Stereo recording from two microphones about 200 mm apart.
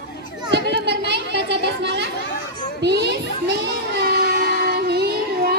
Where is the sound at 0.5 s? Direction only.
60° right (ahead or behind).